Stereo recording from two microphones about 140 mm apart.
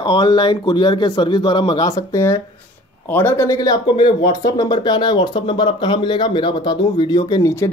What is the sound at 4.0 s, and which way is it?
Speech, 40° left (ahead or behind).